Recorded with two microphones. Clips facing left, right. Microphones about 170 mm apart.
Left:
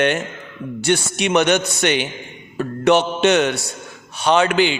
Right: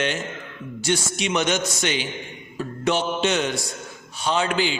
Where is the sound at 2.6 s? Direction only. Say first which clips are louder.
Left 8 dB; 70° left (ahead or behind).